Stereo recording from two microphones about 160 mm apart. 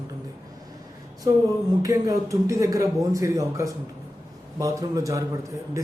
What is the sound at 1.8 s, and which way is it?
Speech, 20° right (ahead or behind).